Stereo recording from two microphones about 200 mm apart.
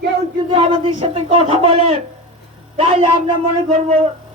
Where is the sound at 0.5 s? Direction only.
30° right (ahead or behind).